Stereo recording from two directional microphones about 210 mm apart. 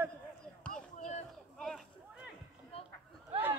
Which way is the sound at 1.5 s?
Centre (ahead or behind).